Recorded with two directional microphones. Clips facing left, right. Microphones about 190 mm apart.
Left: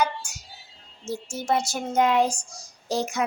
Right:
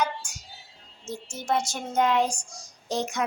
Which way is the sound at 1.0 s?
5° left (ahead or behind).